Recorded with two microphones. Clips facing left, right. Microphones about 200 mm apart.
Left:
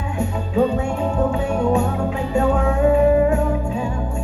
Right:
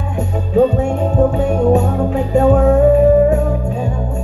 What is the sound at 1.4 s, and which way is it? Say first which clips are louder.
Music: right 5 dB; 40° right (ahead or behind).